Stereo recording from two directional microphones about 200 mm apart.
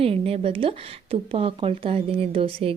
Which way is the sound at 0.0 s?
30° right (ahead or behind).